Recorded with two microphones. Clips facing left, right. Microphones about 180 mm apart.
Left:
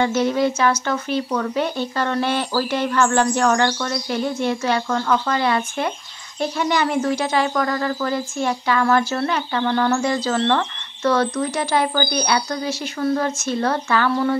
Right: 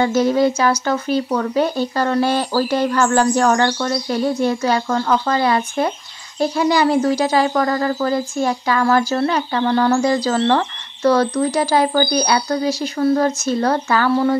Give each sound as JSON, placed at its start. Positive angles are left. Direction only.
{"t": 0.0, "sound": "speech", "side_deg": -40}